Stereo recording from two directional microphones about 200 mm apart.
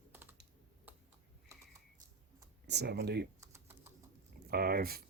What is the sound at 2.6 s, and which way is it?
Speech, 55° right (ahead or behind).